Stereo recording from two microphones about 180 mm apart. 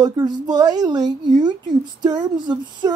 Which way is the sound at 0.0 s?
20° right (ahead or behind).